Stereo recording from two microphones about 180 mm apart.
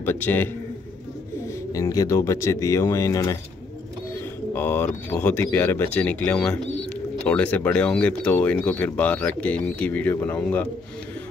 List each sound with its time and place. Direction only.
0.0 s speech: 10° left (ahead or behind)
1.7 s speech: 20° left (ahead or behind)